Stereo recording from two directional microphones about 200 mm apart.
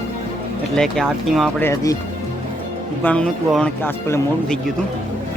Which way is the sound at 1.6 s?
15° left (ahead or behind).